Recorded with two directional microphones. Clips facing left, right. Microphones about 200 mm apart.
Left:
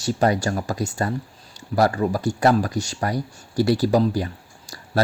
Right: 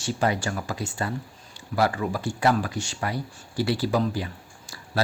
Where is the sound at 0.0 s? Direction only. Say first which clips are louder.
Left 5 dB; 40° left (ahead or behind).